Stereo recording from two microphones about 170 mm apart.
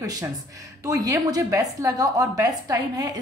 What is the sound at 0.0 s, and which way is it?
A woman's voice, 20° right (ahead or behind).